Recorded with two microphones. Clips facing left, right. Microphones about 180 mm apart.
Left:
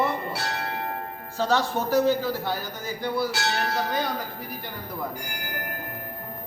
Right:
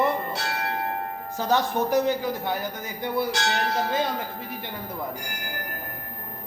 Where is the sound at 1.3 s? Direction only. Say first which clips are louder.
Even; 15° right (ahead or behind).